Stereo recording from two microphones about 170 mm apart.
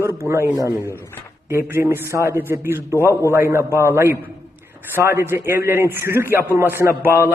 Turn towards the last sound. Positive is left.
turn(degrees=-15)  # may be behind; listen again after turning